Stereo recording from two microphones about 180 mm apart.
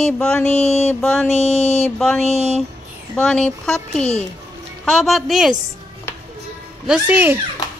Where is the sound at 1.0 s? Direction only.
5° left (ahead or behind).